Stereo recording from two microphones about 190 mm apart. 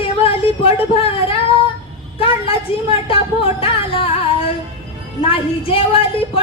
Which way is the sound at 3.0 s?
30° left (ahead or behind).